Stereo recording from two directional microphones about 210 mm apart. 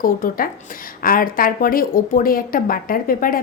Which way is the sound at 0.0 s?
45° left (ahead or behind).